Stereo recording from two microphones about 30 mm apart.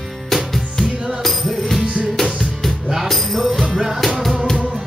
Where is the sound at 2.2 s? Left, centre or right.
Centre.